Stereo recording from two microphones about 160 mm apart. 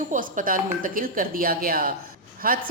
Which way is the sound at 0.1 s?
55° right (ahead or behind).